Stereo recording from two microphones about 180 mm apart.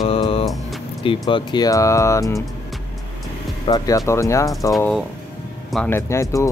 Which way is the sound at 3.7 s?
20° left (ahead or behind).